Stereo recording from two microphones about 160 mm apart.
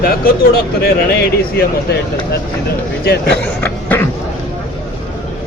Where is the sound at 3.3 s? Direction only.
10° left (ahead or behind).